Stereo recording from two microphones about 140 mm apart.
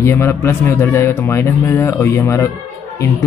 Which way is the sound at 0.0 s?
20° left (ahead or behind).